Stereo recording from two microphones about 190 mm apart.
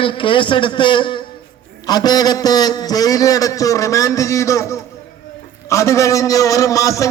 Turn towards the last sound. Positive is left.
turn(degrees=15)  # may be behind; listen again after turning